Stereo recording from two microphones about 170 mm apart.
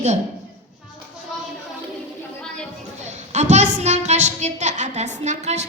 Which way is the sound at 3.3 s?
45° right (ahead or behind).